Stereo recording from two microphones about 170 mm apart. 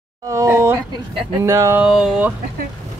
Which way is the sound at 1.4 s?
15° right (ahead or behind).